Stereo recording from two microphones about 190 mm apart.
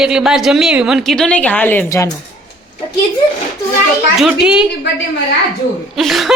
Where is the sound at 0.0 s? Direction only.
5° right (ahead or behind); by 2.0 s 10° left (ahead or behind).